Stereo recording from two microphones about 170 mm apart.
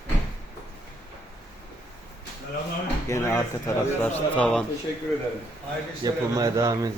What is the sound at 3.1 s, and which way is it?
Speech, 15° left (ahead or behind).